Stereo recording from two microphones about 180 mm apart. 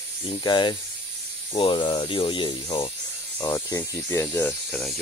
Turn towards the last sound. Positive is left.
turn(degrees=0)  # may be behind; listen again after turning